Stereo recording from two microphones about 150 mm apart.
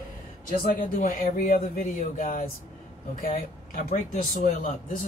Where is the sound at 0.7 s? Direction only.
65° left (ahead or behind).